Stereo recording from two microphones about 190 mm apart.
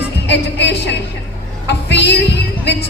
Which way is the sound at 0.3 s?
65° left (ahead or behind).